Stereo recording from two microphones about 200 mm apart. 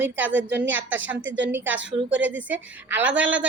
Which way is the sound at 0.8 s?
70° right (ahead or behind).